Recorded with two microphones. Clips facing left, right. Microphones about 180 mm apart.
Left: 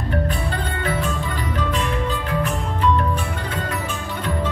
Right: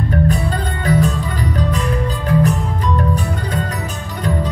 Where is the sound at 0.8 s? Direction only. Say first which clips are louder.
Right 8 dB; 40° right (ahead or behind).